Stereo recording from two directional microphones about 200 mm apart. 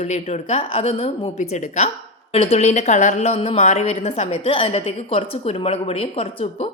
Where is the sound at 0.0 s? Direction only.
35° left (ahead or behind).